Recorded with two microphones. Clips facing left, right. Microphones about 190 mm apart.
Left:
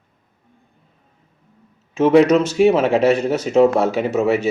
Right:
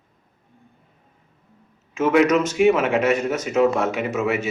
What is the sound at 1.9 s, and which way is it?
Speech, 30° left (ahead or behind).